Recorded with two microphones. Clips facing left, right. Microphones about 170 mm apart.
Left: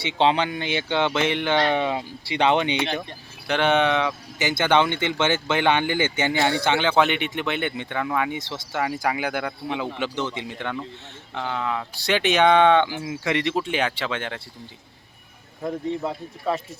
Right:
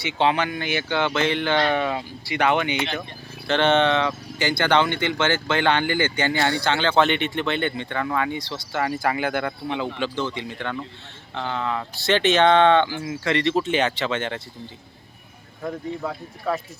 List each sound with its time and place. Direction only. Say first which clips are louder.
0.2 s speech: left 1 dB; 20° left (ahead or behind)
3.4 s speech: right 1 dB; 10° left (ahead or behind)
10.3 s speech: right 1 dB; 20° left (ahead or behind)
11.3 s speech: right 1 dB; 5° left (ahead or behind)
15.6 s speech: left 2 dB; 15° left (ahead or behind)